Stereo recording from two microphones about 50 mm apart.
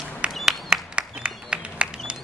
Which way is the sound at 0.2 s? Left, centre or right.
Right.